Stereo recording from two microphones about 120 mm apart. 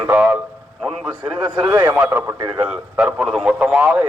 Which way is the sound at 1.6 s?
20° right (ahead or behind).